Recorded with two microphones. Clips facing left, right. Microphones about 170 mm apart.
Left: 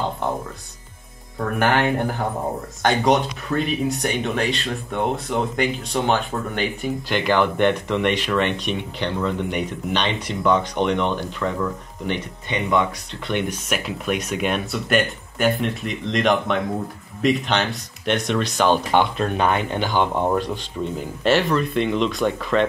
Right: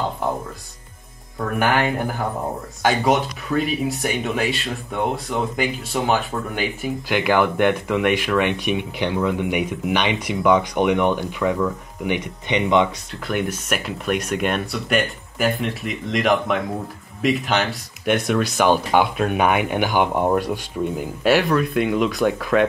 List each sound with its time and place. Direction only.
1.6 s speech: 10° right (ahead or behind)
12.4 s speech: 20° right (ahead or behind)
13.3 s speech: 5° right (ahead or behind)